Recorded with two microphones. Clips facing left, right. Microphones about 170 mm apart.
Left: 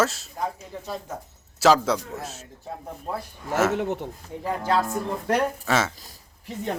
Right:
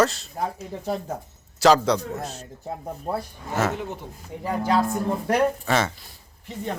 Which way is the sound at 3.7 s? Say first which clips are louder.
Left 5 dB; 70° left (ahead or behind).